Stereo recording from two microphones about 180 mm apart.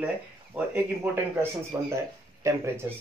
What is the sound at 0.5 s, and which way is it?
Speech, 10° right (ahead or behind).